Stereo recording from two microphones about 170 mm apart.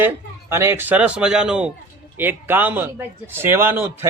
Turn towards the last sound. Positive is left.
turn(degrees=-15)  # may be behind; listen again after turning